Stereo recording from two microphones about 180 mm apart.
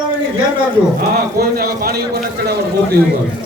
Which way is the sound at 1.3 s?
60° right (ahead or behind).